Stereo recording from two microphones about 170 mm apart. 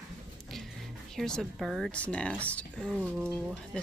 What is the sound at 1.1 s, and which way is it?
Speech, 5° left (ahead or behind).